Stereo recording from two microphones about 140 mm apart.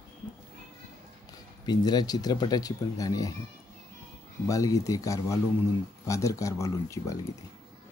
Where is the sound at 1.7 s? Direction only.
30° left (ahead or behind).